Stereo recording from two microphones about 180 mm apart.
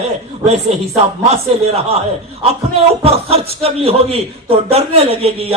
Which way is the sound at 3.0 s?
35° right (ahead or behind).